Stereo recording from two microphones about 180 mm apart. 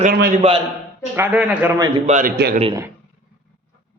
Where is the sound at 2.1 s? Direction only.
45° right (ahead or behind).